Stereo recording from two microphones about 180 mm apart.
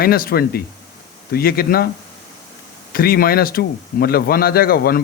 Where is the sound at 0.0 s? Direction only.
55° left (ahead or behind).